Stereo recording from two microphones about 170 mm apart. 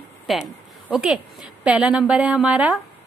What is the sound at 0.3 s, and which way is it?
A woman's voice, 5° right (ahead or behind).